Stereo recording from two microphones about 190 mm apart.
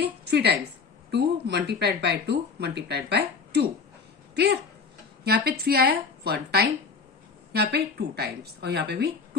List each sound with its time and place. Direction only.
0.0 s a sound: 60° right (ahead or behind)
1.1 s speech: 60° right (ahead or behind)
5.2 s speech: 55° right (ahead or behind)